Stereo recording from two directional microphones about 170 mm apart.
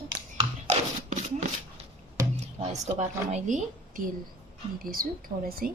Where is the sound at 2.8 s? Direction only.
40° right (ahead or behind); by 5.7 s 60° right (ahead or behind).